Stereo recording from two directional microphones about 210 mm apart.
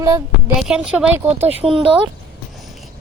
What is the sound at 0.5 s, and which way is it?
Speech, 5° right (ahead or behind).